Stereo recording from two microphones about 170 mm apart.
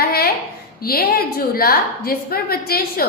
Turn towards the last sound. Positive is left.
turn(degrees=60)  # may be behind; listen again after turning